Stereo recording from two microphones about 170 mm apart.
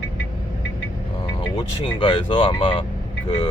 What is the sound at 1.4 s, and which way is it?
Speech, 30° left (ahead or behind).